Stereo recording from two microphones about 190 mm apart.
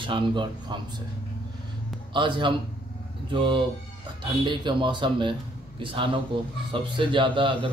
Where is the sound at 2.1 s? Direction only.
25° right (ahead or behind).